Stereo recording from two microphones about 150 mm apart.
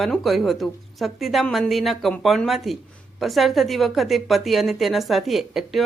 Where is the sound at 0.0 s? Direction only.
Centre (ahead or behind).